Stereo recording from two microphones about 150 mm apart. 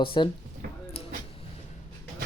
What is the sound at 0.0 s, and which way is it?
Speech, 35° left (ahead or behind).